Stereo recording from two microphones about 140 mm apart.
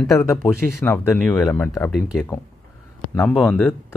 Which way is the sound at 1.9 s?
Centre (ahead or behind).